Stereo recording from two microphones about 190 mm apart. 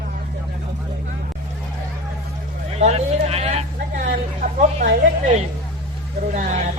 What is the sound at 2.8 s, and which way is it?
Speech, 35° right (ahead or behind).